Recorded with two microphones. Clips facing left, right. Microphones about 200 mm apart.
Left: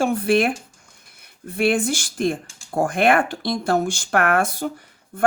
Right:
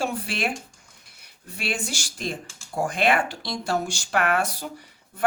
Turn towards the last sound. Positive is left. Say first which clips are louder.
# left 3 dB
turn(degrees=50)  # may be behind; listen again after turning